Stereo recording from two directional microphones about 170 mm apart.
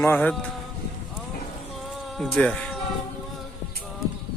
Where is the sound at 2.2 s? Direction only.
10° left (ahead or behind).